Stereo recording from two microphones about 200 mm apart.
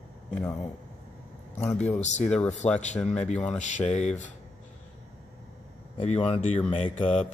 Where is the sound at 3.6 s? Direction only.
35° left (ahead or behind).